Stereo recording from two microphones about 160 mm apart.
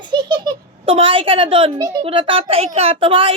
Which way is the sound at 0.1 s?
25° right (ahead or behind).